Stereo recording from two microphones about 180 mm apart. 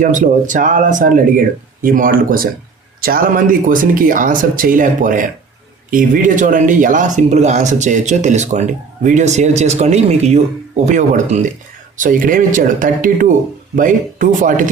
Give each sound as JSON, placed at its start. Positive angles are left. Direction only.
{"t": 0.0, "sound": "speech", "side_deg": -45}